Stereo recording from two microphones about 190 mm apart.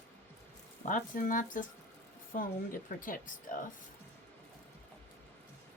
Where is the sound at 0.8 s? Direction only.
45° left (ahead or behind).